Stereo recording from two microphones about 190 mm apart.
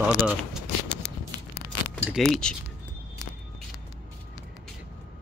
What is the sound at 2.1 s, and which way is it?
Speech, centre (ahead or behind).